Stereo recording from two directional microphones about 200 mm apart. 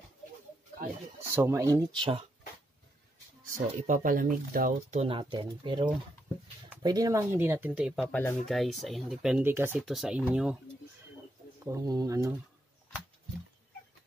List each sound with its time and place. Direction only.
1.3 s speech: 15° right (ahead or behind)
3.4 s speech: 40° right (ahead or behind)
5.0 s speech: 25° right (ahead or behind); by 10.6 s 5° right (ahead or behind)
11.6 s speech: 15° right (ahead or behind)